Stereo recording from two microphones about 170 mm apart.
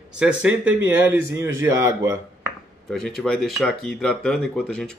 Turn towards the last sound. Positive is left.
turn(degrees=5)  # may be behind; listen again after turning